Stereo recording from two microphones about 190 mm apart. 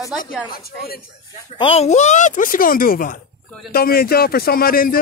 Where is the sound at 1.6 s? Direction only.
30° left (ahead or behind).